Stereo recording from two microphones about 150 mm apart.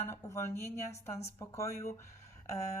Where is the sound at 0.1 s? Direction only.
20° left (ahead or behind).